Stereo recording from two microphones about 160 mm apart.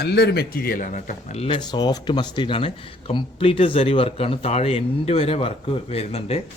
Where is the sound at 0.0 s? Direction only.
90° left; by 6.4 s 40° left (ahead or behind).